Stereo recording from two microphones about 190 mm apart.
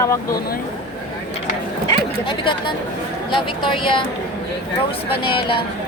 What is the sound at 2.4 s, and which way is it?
Speech, 25° left (ahead or behind).